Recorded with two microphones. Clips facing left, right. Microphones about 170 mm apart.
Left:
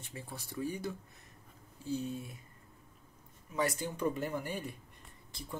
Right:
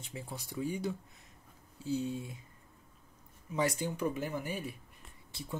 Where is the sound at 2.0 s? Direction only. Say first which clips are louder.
Right 3 dB; 20° right (ahead or behind).